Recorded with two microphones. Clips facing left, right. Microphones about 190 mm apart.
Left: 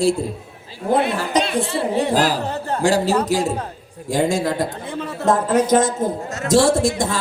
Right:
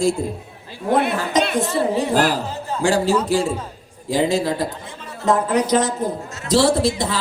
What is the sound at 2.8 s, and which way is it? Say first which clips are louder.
A man's voice: even; 35° left (ahead or behind).